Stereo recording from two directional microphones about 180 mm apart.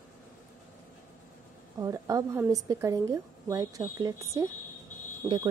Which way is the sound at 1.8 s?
20° right (ahead or behind).